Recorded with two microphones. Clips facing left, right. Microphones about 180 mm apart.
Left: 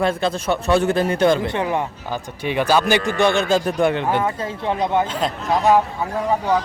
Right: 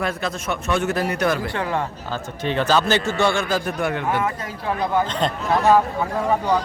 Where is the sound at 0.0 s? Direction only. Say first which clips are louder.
Left 5 dB; 30° left (ahead or behind).